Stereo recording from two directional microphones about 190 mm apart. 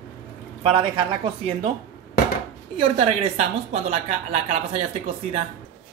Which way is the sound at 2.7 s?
30° right (ahead or behind).